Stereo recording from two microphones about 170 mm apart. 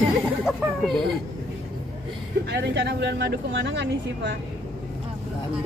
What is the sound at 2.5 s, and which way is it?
Speech, 85° right.